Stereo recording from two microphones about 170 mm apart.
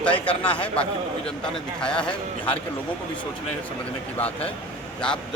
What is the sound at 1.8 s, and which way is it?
Speech, 5° left (ahead or behind).